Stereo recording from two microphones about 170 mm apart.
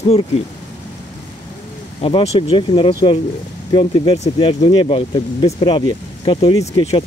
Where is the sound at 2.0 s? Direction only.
30° left (ahead or behind).